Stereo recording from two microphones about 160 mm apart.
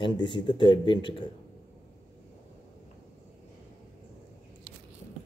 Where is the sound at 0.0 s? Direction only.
30° left (ahead or behind).